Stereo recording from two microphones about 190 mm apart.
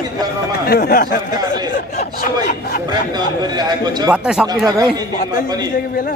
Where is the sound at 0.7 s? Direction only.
50° left (ahead or behind).